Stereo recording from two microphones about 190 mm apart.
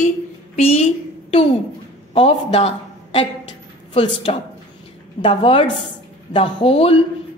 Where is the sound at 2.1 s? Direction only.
30° left (ahead or behind).